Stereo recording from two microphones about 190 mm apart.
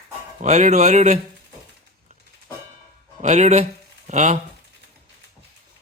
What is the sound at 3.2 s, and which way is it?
Speech, 40° right (ahead or behind).